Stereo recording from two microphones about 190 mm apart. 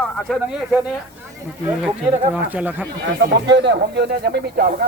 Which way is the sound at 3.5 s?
65° right (ahead or behind).